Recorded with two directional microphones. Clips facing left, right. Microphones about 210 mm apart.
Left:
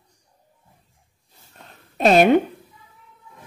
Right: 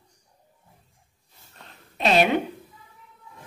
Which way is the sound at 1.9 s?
45° left (ahead or behind).